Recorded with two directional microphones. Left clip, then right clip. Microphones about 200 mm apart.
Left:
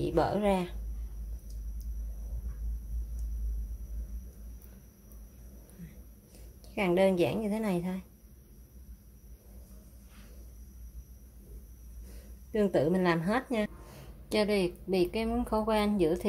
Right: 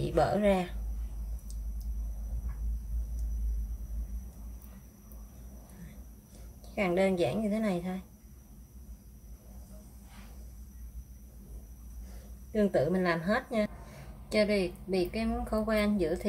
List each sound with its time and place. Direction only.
0.0 s speech: 20° left (ahead or behind)
6.7 s a woman's voice: 35° left (ahead or behind)
12.5 s a woman's voice: 35° left (ahead or behind)